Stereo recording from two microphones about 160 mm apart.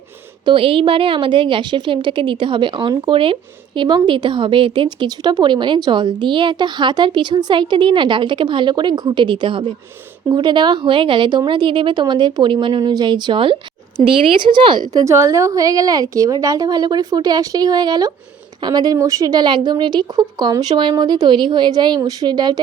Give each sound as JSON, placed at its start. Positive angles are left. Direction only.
{"t": 0.4, "sound": "a woman's voice", "side_deg": -35}
{"t": 15.0, "sound": "a woman's voice", "side_deg": -20}